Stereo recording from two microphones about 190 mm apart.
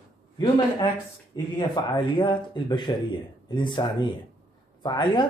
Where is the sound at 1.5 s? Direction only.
25° left (ahead or behind).